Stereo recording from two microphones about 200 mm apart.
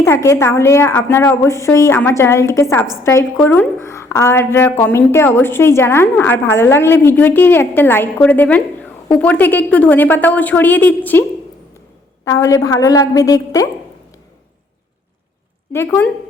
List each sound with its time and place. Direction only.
0.0 s a woman's voice: 15° left (ahead or behind)
15.7 s a woman's voice: 10° left (ahead or behind)